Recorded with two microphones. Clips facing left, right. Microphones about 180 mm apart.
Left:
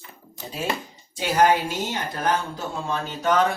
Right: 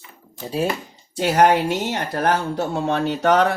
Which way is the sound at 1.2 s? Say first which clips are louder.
Right 4 dB; 70° right (ahead or behind).